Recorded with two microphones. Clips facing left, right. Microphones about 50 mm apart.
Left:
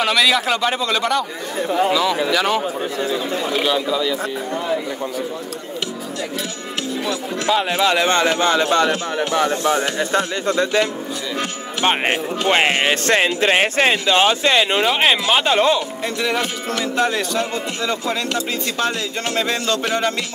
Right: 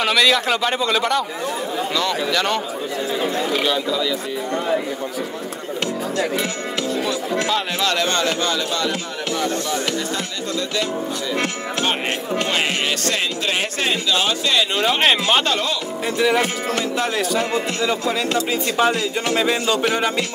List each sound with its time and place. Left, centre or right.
0.0 s speech: centre
7.5 s speech: centre
14.8 s speech: centre
15.4 s speech: left
16.2 s speech: centre
19.3 s speech: centre